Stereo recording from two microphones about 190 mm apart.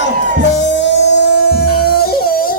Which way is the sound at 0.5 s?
70° left (ahead or behind).